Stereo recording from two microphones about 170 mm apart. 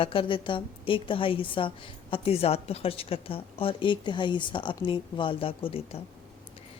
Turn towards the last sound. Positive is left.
turn(degrees=35)  # may be behind; listen again after turning